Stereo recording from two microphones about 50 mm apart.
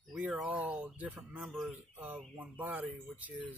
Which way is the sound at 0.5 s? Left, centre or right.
Right.